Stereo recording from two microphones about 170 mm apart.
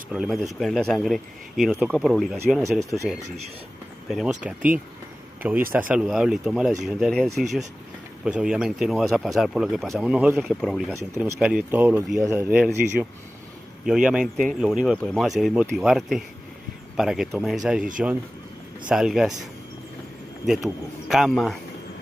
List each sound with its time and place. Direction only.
0.1 s speech: centre (ahead or behind)
2.8 s speech: 20° right (ahead or behind)
4.1 s speech: 5° right (ahead or behind)
10.9 s speech: 15° right (ahead or behind)
11.3 s speech: 5° right (ahead or behind)
13.8 s speech: 5° right (ahead or behind)
18.9 s speech: 5° right (ahead or behind)
20.4 s speech: centre (ahead or behind)